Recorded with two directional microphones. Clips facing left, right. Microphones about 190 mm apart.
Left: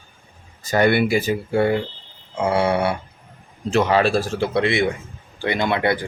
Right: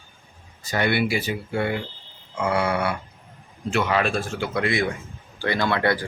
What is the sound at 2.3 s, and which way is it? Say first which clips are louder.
Speech: left 4 dB; 30° left (ahead or behind).